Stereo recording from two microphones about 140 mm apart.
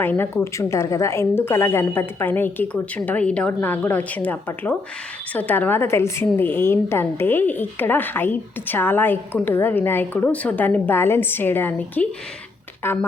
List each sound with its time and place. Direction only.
0.0 s a woman's voice: 15° left (ahead or behind)